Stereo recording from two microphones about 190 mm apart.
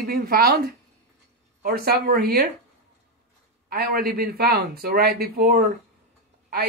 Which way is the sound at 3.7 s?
50° right (ahead or behind).